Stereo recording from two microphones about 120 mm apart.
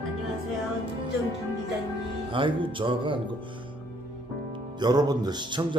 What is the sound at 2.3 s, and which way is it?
Speech, 45° right (ahead or behind).